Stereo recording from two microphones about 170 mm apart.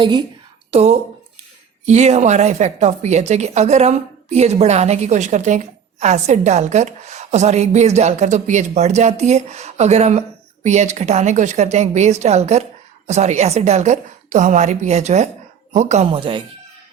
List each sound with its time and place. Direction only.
0.0 s speech: 25° right (ahead or behind)
0.7 s a woman's voice: 40° right (ahead or behind)